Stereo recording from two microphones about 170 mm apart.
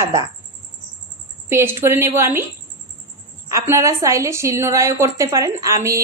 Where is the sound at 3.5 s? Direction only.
15° right (ahead or behind).